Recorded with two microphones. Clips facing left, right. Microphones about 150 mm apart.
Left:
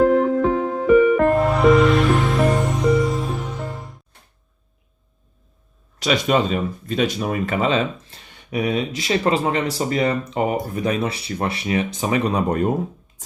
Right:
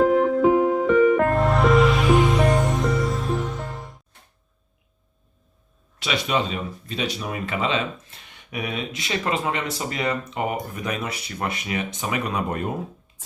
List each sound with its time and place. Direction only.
0.1 s music: 5° right (ahead or behind)
0.5 s music: 15° right (ahead or behind)
0.9 s music: 5° left (ahead or behind)
6.0 s speech: 45° left (ahead or behind)